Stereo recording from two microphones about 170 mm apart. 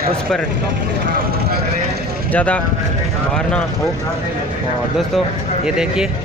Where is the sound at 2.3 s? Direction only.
5° left (ahead or behind).